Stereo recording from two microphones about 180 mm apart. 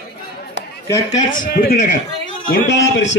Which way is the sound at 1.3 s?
50° left (ahead or behind).